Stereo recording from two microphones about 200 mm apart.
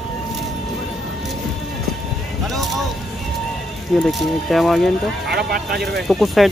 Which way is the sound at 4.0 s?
Centre (ahead or behind).